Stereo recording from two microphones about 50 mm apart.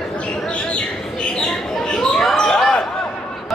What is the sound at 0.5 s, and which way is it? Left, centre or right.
Bird, left.